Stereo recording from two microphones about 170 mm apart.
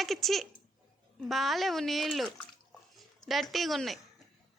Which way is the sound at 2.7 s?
Centre (ahead or behind).